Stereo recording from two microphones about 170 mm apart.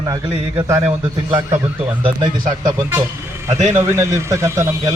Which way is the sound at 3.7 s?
15° right (ahead or behind).